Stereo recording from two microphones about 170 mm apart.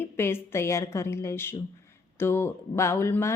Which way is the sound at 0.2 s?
15° left (ahead or behind).